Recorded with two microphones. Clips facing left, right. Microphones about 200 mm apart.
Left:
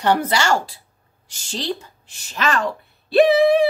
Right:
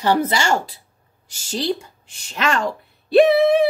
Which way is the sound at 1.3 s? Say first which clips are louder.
Right 4 dB; 10° right (ahead or behind).